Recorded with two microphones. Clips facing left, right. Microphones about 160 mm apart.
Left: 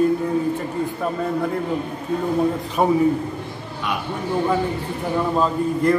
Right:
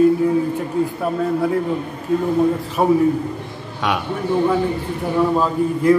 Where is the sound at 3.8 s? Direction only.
90° right.